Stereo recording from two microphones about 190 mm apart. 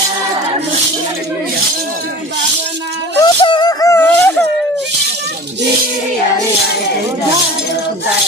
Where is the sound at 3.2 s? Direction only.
25° left (ahead or behind).